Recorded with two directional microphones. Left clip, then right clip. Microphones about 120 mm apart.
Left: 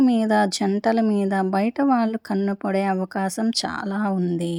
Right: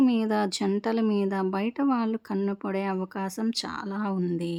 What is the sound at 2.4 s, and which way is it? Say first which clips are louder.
Speech: left 8 dB; 30° left (ahead or behind).